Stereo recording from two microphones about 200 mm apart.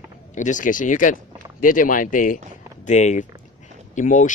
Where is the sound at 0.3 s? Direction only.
40° left (ahead or behind).